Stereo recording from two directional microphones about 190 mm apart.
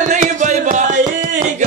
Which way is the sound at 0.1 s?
40° right (ahead or behind).